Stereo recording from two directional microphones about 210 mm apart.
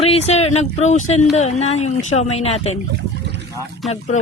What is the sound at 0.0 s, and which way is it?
Speech, 30° left (ahead or behind).